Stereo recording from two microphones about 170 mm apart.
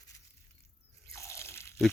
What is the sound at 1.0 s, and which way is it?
Drip, 15° left (ahead or behind).